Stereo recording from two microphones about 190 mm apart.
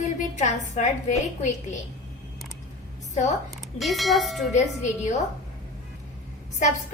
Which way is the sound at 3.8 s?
Centre (ahead or behind).